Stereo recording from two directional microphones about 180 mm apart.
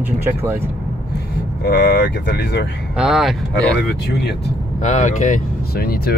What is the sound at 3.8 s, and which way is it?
Speech, 60° left (ahead or behind).